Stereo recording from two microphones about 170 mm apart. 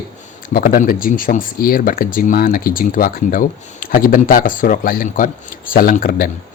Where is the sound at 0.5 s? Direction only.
55° left (ahead or behind).